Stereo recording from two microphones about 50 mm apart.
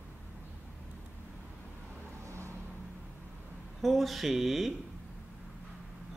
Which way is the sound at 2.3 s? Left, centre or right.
Right.